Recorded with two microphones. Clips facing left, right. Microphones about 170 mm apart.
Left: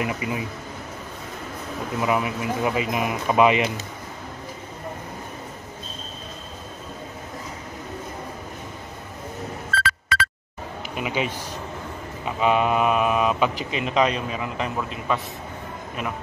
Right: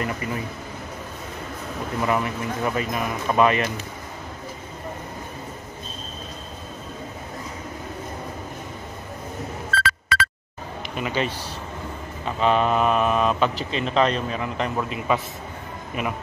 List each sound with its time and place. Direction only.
0.0 s speech: 10° left (ahead or behind)
2.0 s speech: 5° left (ahead or behind)
9.8 s a sound: 70° right (ahead or behind)
11.0 s speech: 10° left (ahead or behind)